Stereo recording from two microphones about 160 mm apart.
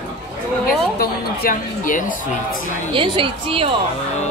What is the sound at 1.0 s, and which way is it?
A woman's voice, 70° left (ahead or behind).